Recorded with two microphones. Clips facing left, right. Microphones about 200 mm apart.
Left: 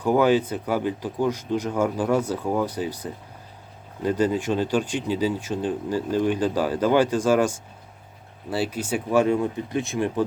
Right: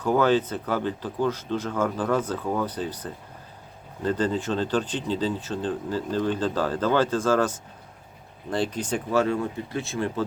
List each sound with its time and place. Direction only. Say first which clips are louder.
0.0 s speech: left 2 dB; 15° left (ahead or behind)